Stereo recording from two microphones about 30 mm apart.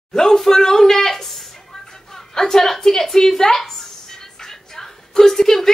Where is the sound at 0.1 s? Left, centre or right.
Centre.